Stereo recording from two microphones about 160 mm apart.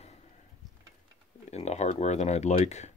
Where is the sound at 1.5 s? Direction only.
45° left (ahead or behind).